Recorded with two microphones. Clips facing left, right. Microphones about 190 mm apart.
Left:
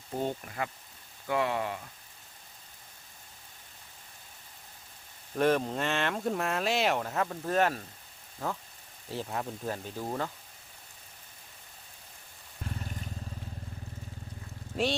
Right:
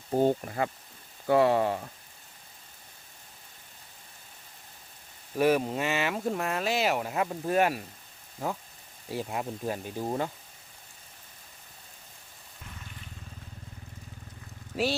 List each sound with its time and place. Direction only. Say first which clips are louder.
0.1 s speech: right 8 dB; 35° right (ahead or behind)
5.4 s speech: right 2 dB; 10° right (ahead or behind)
9.0 s speech: right 2 dB; 10° right (ahead or behind)
10.1 s speech: right 3 dB; 25° right (ahead or behind)
12.8 s vehicle: left 7 dB; 40° left (ahead or behind)